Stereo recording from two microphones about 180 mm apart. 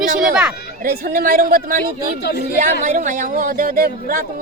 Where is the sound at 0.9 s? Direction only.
50° right (ahead or behind).